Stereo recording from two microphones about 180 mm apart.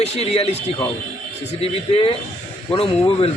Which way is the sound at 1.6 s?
30° left (ahead or behind).